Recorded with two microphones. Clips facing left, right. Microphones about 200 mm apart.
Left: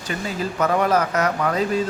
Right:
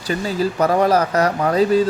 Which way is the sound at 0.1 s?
35° right (ahead or behind).